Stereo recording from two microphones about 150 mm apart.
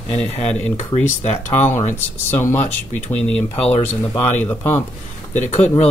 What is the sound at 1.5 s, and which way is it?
Speech, 15° left (ahead or behind).